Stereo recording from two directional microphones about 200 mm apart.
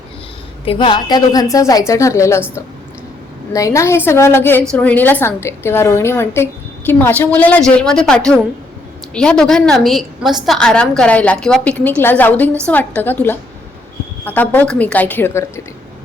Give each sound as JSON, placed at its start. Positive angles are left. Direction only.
{"t": 0.6, "sound": "a woman's voice", "side_deg": 25}
{"t": 3.5, "sound": "a woman's voice", "side_deg": 15}